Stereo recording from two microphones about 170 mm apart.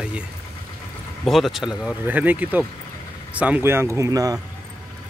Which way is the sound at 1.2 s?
Centre (ahead or behind).